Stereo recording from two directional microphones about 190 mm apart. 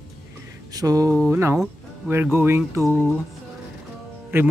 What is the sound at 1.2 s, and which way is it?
Speech, 10° right (ahead or behind).